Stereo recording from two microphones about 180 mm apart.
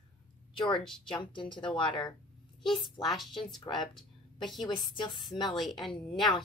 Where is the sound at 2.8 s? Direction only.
Centre (ahead or behind).